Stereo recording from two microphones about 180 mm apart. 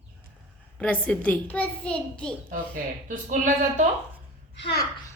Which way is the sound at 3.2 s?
45° right (ahead or behind).